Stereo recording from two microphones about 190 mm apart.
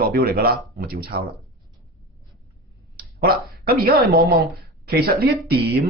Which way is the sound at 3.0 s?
55° right (ahead or behind).